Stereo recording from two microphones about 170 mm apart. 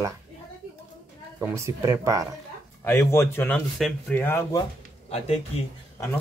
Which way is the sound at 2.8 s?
15° left (ahead or behind).